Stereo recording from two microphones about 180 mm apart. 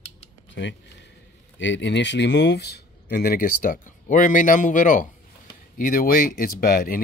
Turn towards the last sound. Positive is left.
turn(degrees=55)  # may be behind; listen again after turning